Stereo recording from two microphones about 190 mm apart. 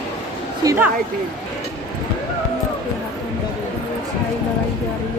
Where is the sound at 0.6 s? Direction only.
10° right (ahead or behind).